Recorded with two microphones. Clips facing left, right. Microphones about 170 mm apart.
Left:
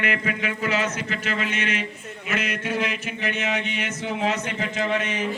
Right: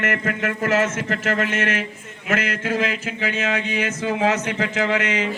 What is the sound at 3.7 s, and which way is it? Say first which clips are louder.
Speech: right 5 dB; 90° right.